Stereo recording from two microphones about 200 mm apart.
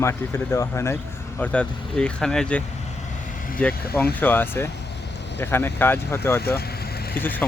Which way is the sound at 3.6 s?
5° left (ahead or behind).